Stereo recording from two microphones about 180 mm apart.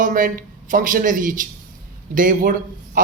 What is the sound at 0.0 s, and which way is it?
A man's voice, 50° right (ahead or behind).